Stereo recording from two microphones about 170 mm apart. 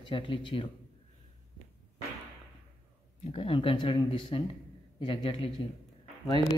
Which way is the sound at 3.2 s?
35° left (ahead or behind).